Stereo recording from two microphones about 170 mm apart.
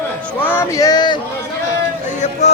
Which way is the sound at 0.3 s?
10° left (ahead or behind).